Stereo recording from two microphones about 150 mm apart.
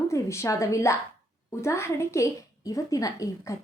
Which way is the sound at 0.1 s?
20° left (ahead or behind).